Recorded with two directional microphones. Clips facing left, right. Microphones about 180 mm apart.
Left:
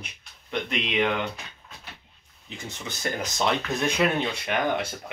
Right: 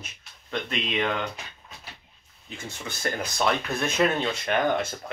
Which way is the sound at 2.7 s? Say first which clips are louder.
Even; 20° left (ahead or behind).